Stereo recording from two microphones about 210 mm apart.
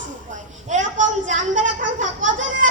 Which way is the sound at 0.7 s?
35° right (ahead or behind).